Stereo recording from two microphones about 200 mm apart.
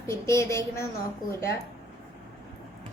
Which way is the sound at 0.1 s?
15° left (ahead or behind).